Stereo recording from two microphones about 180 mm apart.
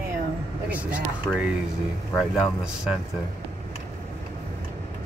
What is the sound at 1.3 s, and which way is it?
Speech, 10° left (ahead or behind).